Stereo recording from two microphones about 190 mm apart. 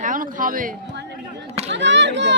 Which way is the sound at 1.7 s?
70° right (ahead or behind).